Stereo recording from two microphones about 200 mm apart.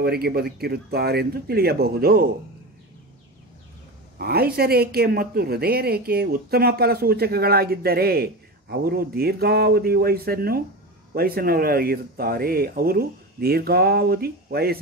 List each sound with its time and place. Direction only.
0.0 s speech: 50° right (ahead or behind)
4.2 s speech: 50° right (ahead or behind)